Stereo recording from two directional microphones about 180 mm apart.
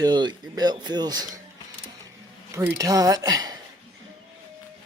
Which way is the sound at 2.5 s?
20° right (ahead or behind).